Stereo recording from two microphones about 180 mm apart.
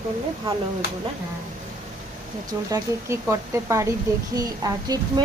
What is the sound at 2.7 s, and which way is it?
A woman's voice, 15° right (ahead or behind).